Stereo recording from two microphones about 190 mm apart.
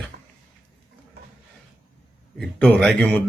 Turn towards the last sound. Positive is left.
turn(degrees=5)  # may be behind; listen again after turning